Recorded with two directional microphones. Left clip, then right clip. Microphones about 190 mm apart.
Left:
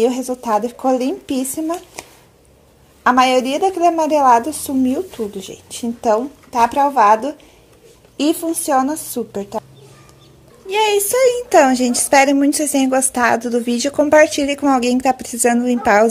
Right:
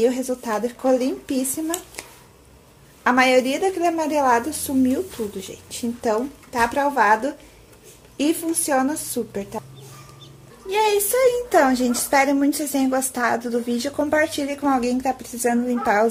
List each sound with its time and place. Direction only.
0.0 s a woman's voice: 25° left (ahead or behind)
10.7 s a child's voice: 25° left (ahead or behind)